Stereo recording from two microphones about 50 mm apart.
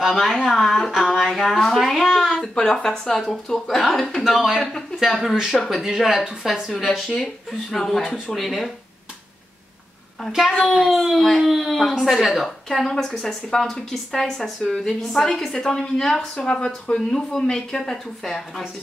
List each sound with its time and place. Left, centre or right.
0.0 s speech: centre
2.4 s a woman's voice: centre
6.7 s speech: centre
10.7 s speech: centre
12.6 s a woman's voice: centre